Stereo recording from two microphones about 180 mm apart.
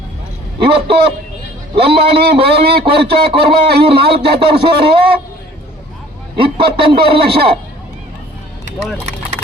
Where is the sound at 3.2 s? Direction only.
30° right (ahead or behind).